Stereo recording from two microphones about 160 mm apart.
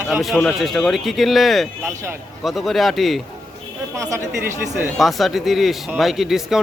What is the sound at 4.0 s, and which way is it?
Speech, 15° right (ahead or behind).